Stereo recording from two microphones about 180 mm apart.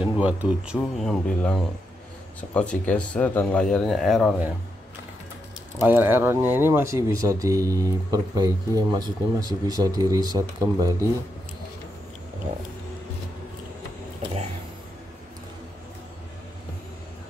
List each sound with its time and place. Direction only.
0.0 s speech: 5° right (ahead or behind)
5.8 s speech: 10° right (ahead or behind)